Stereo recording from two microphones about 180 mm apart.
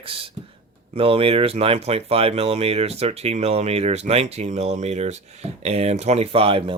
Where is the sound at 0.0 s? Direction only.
30° right (ahead or behind).